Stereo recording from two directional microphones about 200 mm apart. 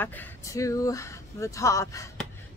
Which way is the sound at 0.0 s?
10° left (ahead or behind).